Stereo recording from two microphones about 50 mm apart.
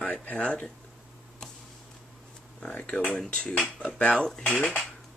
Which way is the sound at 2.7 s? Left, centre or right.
Left.